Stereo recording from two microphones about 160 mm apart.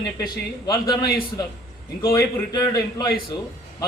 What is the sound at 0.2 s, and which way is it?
A man's voice, 25° left (ahead or behind).